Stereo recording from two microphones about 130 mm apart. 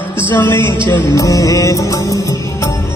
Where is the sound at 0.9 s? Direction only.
25° left (ahead or behind).